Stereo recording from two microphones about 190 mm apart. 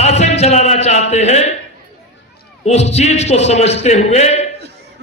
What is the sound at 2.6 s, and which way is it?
A man's voice, 35° left (ahead or behind).